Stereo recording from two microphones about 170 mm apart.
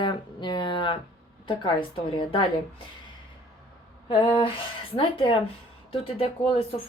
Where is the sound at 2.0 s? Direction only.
30° left (ahead or behind).